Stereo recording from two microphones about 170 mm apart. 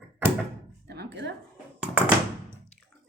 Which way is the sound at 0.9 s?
80° right.